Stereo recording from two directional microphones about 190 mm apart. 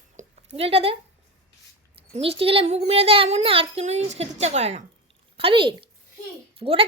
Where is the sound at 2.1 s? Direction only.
30° right (ahead or behind).